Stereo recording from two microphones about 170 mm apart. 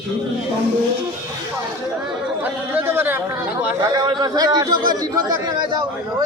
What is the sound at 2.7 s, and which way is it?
A man's voice, 15° right (ahead or behind).